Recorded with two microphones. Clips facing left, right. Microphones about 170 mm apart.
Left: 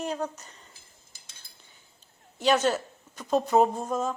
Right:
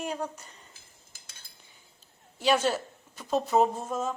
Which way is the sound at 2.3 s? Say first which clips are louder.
Left 2 dB; 5° right (ahead or behind).